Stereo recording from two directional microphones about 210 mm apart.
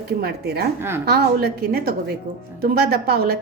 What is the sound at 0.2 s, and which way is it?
A woman's voice, 50° right (ahead or behind).